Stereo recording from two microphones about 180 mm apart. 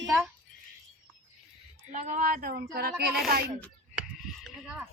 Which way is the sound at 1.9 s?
40° right (ahead or behind).